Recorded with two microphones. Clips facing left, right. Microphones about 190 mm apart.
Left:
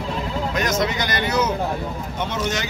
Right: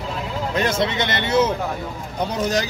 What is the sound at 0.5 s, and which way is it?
Speech, 30° right (ahead or behind).